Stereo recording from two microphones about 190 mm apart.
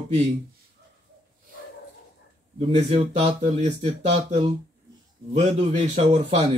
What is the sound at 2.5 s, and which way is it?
Speech, 35° right (ahead or behind).